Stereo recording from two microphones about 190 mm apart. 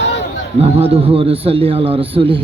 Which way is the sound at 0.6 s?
30° right (ahead or behind).